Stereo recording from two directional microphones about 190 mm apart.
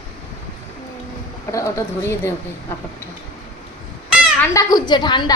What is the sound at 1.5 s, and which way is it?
Speech, 15° left (ahead or behind).